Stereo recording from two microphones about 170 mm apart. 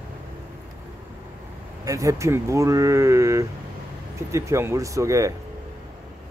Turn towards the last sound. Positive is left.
turn(degrees=-20)  # may be behind; listen again after turning